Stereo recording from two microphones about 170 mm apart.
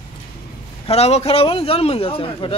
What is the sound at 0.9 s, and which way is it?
A man's voice, 40° left (ahead or behind).